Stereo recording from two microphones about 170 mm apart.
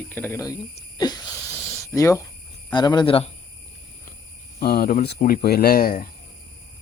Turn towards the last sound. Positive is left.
turn(degrees=60)  # may be behind; listen again after turning